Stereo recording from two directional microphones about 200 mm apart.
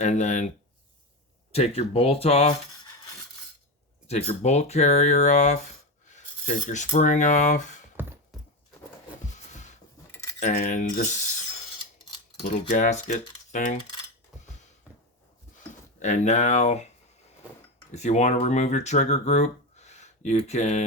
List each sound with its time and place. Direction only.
0.0 s speech: 35° left (ahead or behind)
1.5 s speech: 30° left (ahead or behind)
4.0 s speech: 30° left (ahead or behind)
6.1 s coin: 35° left (ahead or behind)
8.0 s a sound: 10° right (ahead or behind)
10.4 s speech: 35° left (ahead or behind)
12.4 s speech: 35° left (ahead or behind)
16.0 s speech: 35° left (ahead or behind)
17.9 s speech: 35° left (ahead or behind)